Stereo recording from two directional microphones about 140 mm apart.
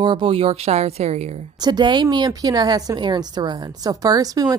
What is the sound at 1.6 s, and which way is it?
A woman's voice, 30° right (ahead or behind).